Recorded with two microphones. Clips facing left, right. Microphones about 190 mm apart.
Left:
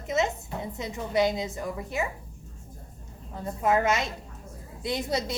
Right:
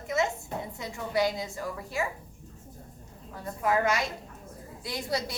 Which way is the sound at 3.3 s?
20° left (ahead or behind).